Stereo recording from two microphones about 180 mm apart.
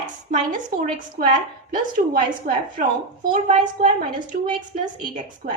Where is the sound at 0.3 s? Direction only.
45° right (ahead or behind).